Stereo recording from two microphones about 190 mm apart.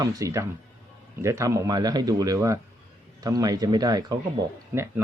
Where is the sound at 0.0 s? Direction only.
20° right (ahead or behind).